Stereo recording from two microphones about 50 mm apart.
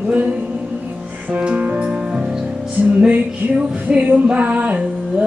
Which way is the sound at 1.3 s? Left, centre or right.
Right.